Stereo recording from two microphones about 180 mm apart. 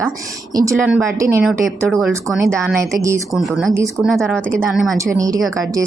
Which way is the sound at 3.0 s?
15° right (ahead or behind).